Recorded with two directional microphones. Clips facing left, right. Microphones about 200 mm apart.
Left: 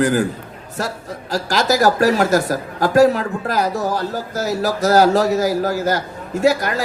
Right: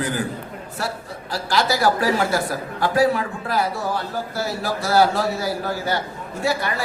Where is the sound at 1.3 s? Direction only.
40° left (ahead or behind).